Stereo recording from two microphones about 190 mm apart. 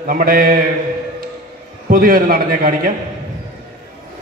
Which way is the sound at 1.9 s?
50° right (ahead or behind).